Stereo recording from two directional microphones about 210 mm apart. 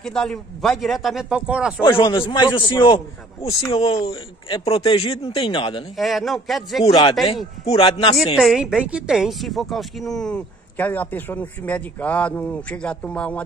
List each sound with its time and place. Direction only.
0.0 s speech: 5° left (ahead or behind)
1.8 s a man's voice: 20° left (ahead or behind)
5.9 s speech: centre (ahead or behind)
6.8 s a man's voice: 25° left (ahead or behind)
8.4 s speech: centre (ahead or behind)